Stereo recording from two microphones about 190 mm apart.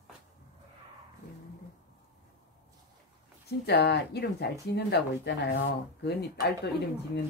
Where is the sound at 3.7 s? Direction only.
60° left (ahead or behind).